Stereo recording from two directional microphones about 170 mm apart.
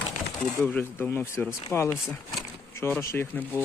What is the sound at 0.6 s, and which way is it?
Speech, 10° left (ahead or behind).